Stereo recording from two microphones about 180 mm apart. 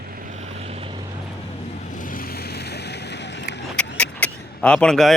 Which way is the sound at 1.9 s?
50° left (ahead or behind).